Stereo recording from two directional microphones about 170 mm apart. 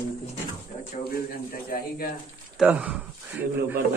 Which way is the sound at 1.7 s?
60° left (ahead or behind).